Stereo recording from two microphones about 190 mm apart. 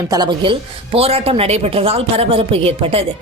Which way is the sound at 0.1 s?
25° right (ahead or behind).